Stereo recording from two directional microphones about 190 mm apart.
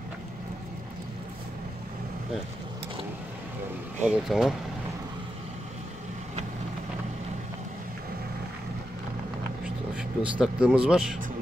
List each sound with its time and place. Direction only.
4.0 s speech: 5° right (ahead or behind)
9.9 s speech: 5° right (ahead or behind)